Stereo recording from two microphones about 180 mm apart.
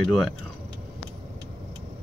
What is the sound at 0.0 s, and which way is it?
Speech, centre (ahead or behind).